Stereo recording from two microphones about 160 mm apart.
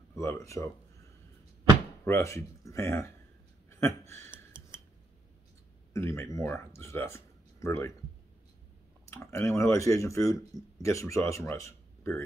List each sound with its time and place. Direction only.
0.1 s a sound: 15° left (ahead or behind)
2.0 s speech: 15° left (ahead or behind)
5.9 s speech: 15° left (ahead or behind)
9.1 s speech: 15° left (ahead or behind)